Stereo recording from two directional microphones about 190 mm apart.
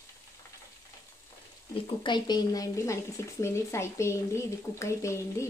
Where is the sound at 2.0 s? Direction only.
25° left (ahead or behind).